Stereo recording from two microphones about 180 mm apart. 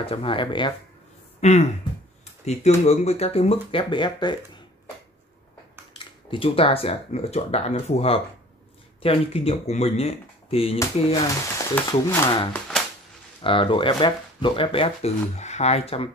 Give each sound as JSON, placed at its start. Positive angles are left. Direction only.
{"t": 0.0, "sound": "speech", "side_deg": 30}
{"t": 1.4, "sound": "speech", "side_deg": 40}
{"t": 5.9, "sound": "speech", "side_deg": 30}
{"t": 11.2, "sound": "speech", "side_deg": 15}
{"t": 13.4, "sound": "speech", "side_deg": 30}